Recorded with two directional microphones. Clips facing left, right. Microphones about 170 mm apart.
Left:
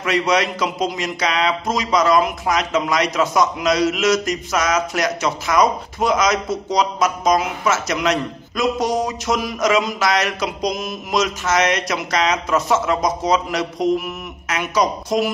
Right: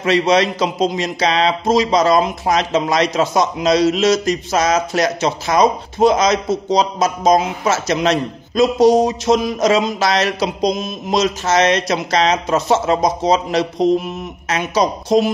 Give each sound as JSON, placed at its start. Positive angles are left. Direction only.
{"t": 0.0, "sound": "speech", "side_deg": -30}